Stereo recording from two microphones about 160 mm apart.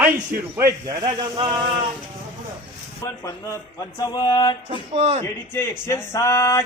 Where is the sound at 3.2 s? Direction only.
20° left (ahead or behind).